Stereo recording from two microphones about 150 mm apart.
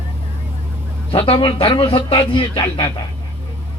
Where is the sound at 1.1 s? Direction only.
40° left (ahead or behind).